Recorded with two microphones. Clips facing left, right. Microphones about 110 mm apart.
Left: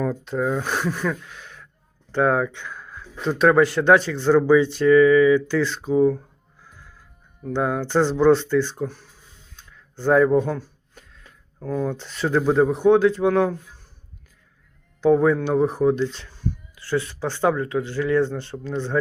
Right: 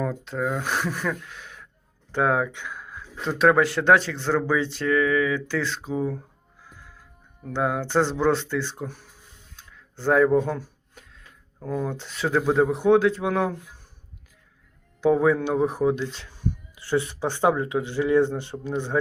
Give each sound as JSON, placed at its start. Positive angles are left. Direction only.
{"t": 0.0, "sound": "speech", "side_deg": 0}
{"t": 7.4, "sound": "speech", "side_deg": 0}
{"t": 9.6, "sound": "a sound", "side_deg": 0}
{"t": 11.6, "sound": "speech", "side_deg": -5}
{"t": 15.0, "sound": "speech", "side_deg": -5}
{"t": 16.7, "sound": "speech", "side_deg": -20}